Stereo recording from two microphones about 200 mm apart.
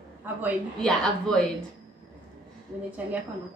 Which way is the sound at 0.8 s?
5° left (ahead or behind).